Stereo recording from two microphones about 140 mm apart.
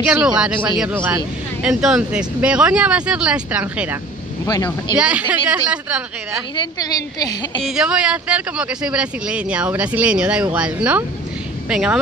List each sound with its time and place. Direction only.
0.0 s speech: 10° right (ahead or behind)
4.9 s speech: 10° right (ahead or behind)
6.5 s a woman's voice: 30° left (ahead or behind)
7.6 s speech: 5° right (ahead or behind)